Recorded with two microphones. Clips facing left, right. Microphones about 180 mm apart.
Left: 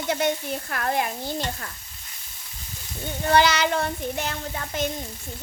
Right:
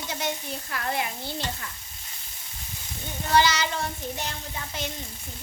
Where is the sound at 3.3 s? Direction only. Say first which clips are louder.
Left 3 dB; 60° left (ahead or behind).